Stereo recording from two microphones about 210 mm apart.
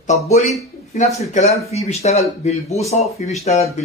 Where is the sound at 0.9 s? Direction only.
30° left (ahead or behind).